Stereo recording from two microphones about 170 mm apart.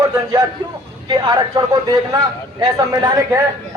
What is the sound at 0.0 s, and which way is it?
A man's voice, 20° right (ahead or behind).